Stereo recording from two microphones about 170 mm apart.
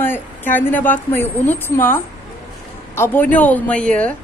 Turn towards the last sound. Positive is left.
turn(degrees=5)  # may be behind; listen again after turning